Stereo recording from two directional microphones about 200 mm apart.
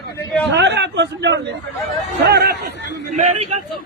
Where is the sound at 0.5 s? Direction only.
60° right (ahead or behind).